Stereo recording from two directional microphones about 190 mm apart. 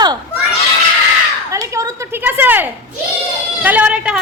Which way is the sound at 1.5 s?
15° right (ahead or behind).